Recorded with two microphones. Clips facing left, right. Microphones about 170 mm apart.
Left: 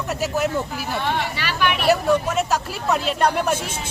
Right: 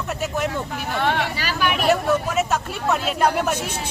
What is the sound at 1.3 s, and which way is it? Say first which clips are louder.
Speech: even; 40° right (ahead or behind).